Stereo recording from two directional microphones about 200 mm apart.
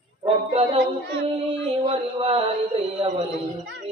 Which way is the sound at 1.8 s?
30° right (ahead or behind).